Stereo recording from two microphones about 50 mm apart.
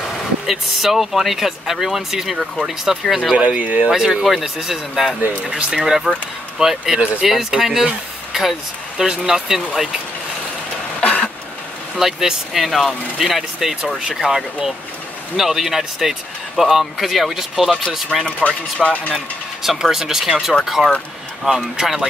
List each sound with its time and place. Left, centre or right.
0.1 s speech: centre
3.3 s speech: right
3.9 s speech: centre
11.0 s cough: left
12.0 s speech: centre
18.8 s speech: left
19.1 s speech: centre